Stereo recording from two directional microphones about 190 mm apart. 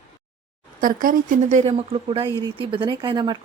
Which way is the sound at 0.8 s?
45° right (ahead or behind).